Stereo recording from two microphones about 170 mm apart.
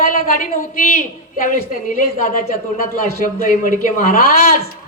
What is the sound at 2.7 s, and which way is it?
Speech, 55° left (ahead or behind).